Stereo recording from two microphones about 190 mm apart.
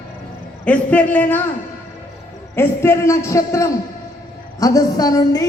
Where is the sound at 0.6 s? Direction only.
5° left (ahead or behind).